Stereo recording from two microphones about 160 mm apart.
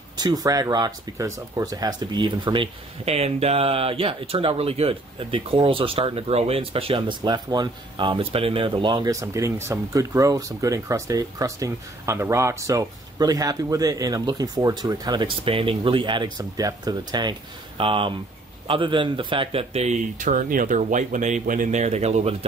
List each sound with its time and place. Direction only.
0.2 s speech: 25° right (ahead or behind); by 22.3 s 45° right (ahead or behind)